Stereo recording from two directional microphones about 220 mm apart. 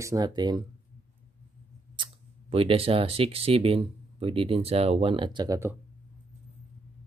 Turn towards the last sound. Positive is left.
turn(degrees=-15)  # may be behind; listen again after turning